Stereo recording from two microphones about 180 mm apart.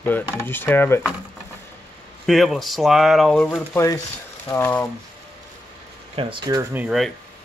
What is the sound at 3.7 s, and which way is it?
Speech, 15° left (ahead or behind).